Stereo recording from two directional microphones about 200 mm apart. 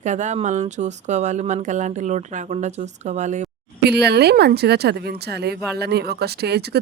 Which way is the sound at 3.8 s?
55° right (ahead or behind).